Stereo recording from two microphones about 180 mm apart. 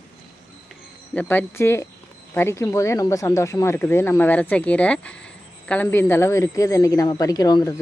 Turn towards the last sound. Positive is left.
turn(degrees=20)  # may be behind; listen again after turning